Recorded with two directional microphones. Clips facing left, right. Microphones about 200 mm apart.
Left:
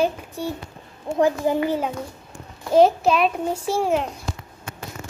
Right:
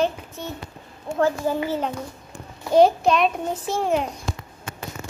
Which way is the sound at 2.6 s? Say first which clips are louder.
Even; centre (ahead or behind).